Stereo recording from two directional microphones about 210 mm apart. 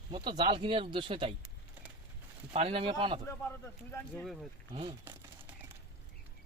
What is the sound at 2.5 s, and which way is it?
Speech, 25° right (ahead or behind).